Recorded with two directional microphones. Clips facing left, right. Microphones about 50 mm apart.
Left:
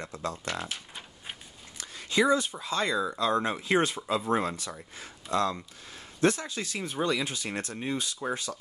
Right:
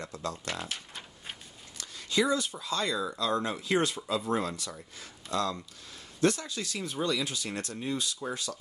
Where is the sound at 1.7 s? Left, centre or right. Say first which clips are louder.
Left 2 dB; left.